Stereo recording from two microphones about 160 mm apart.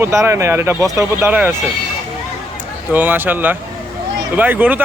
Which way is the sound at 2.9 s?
10° right (ahead or behind).